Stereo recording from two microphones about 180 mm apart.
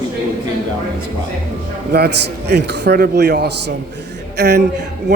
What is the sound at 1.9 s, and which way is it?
A man's voice, 65° right (ahead or behind).